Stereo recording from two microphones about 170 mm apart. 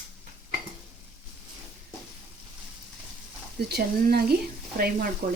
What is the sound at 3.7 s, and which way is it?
Speech, 65° right (ahead or behind).